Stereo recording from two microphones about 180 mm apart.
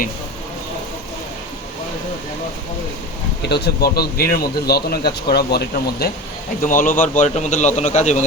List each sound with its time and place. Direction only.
3.5 s speech: 65° left (ahead or behind)
6.7 s a man's voice: 50° left (ahead or behind)